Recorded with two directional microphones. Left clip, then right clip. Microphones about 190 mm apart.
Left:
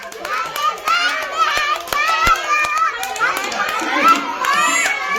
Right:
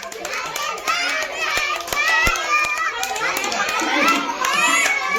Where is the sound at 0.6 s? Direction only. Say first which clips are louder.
Left 6 dB; centre (ahead or behind).